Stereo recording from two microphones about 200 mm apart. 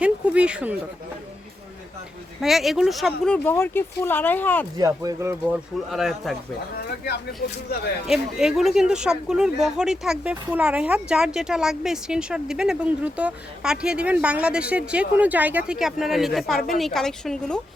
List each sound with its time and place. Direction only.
0.0 s a sound: 5° right (ahead or behind)
2.4 s speech: centre (ahead or behind)
4.8 s speech: 15° right (ahead or behind)
5.9 s speech: centre (ahead or behind)
8.0 s speech: centre (ahead or behind)